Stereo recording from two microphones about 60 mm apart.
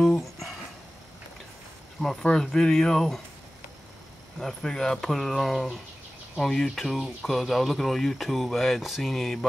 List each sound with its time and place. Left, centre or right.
0.0 s guitar: centre
2.2 s speech: centre
4.4 s speech: centre